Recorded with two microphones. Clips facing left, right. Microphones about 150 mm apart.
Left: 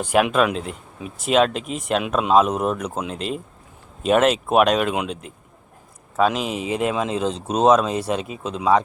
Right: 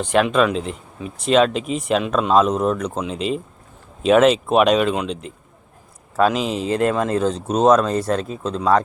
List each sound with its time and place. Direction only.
0.0 s speech: 10° left (ahead or behind)